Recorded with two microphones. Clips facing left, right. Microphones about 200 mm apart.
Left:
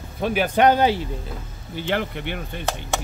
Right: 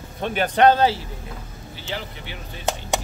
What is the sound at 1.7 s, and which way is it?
Speech, 60° left (ahead or behind).